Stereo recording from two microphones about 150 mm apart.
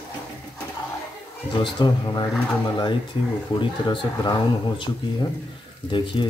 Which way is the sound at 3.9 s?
30° left (ahead or behind).